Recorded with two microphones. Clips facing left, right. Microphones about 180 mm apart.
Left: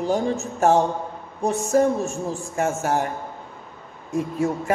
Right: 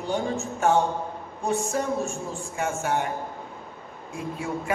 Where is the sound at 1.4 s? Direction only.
40° left (ahead or behind).